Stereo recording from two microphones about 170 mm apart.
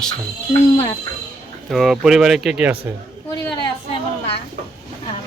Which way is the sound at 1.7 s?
Centre (ahead or behind).